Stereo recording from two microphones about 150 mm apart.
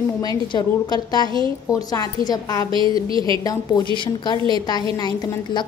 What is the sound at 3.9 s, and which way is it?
A woman's voice, 30° left (ahead or behind).